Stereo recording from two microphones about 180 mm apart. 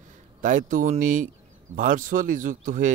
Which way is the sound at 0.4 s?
45° right (ahead or behind).